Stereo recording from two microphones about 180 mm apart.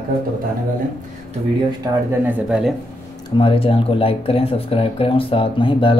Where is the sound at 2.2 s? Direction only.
5° right (ahead or behind).